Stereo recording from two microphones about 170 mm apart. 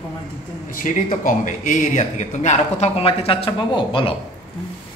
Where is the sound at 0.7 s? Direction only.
50° left (ahead or behind); by 4.1 s 30° left (ahead or behind).